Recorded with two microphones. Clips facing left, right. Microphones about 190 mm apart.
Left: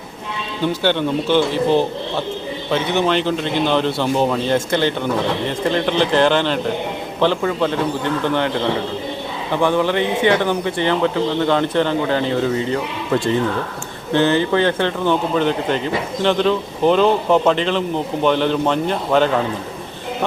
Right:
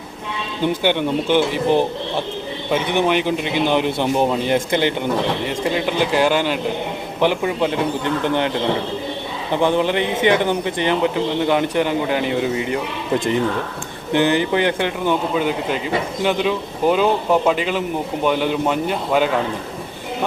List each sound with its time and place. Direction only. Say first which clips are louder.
0.8 s a man's voice: left 2 dB; 15° right (ahead or behind)